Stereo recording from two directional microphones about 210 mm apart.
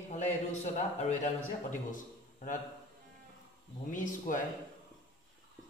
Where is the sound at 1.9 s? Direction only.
40° left (ahead or behind).